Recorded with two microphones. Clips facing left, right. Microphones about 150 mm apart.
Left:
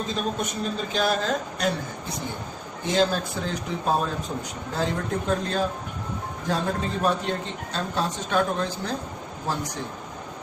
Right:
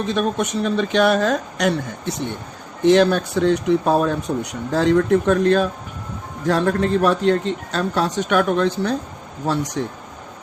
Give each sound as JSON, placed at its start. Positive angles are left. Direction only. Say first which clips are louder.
{"t": 0.1, "sound": "speech", "louder": "right 7 dB", "side_deg": -80}